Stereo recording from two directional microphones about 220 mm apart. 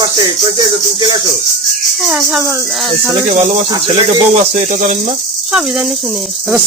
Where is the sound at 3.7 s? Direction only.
25° right (ahead or behind).